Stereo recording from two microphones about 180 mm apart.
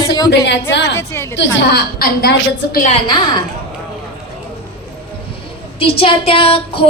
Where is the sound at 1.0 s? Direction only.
15° left (ahead or behind).